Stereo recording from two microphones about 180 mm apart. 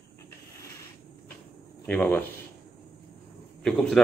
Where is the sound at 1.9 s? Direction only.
10° left (ahead or behind).